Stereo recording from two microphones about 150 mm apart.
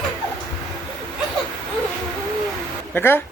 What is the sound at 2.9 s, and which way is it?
Speech, 15° left (ahead or behind).